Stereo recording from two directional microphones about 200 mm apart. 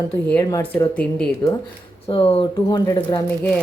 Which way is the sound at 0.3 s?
10° left (ahead or behind).